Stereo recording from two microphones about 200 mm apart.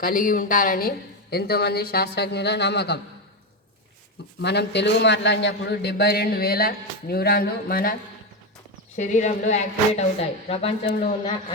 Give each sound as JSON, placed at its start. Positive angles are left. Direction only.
{"t": 0.0, "sound": "a man's voice", "side_deg": 45}
{"t": 4.4, "sound": "a man's voice", "side_deg": 60}
{"t": 9.0, "sound": "a woman's voice", "side_deg": 40}